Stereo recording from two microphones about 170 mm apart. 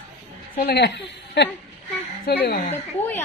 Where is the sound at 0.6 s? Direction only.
75° left (ahead or behind).